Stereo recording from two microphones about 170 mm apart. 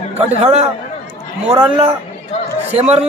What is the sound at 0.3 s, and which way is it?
Speech, 40° right (ahead or behind).